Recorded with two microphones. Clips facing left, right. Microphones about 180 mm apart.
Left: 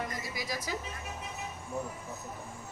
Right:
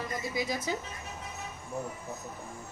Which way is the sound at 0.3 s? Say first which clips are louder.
Right 5 dB; 25° right (ahead or behind).